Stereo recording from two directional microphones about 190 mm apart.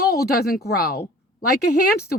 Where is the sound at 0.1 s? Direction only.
55° left (ahead or behind).